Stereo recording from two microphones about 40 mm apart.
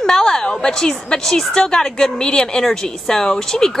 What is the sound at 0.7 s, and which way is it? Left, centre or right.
Speech, centre.